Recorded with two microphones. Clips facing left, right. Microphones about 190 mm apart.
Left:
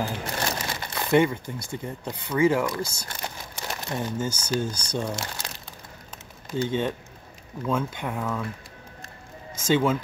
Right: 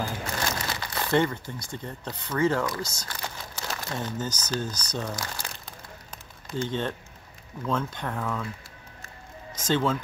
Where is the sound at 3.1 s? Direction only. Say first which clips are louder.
Left 1 dB; 20° left (ahead or behind).